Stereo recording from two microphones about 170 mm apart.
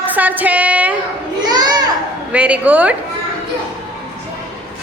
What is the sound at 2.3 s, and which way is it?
Speech, 10° right (ahead or behind).